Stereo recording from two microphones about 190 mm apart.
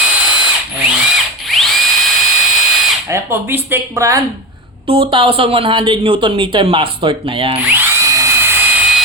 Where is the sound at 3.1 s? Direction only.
10° right (ahead or behind).